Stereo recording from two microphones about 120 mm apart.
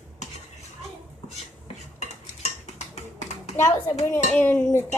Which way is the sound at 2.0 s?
75° left (ahead or behind).